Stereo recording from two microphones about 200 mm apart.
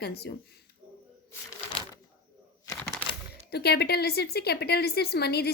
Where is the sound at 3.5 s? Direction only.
55° left (ahead or behind).